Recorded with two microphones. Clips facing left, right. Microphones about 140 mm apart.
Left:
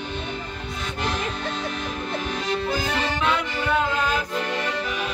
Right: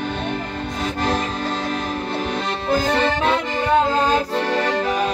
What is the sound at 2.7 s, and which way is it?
Accordion, 45° right (ahead or behind).